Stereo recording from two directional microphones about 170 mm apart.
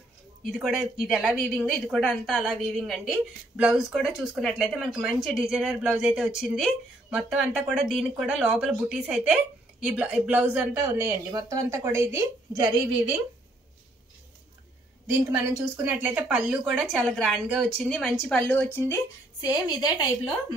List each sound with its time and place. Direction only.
0.5 s speech: centre (ahead or behind)
15.2 s speech: 15° right (ahead or behind); by 18.9 s 10° left (ahead or behind)
19.4 s a woman's voice: 25° left (ahead or behind)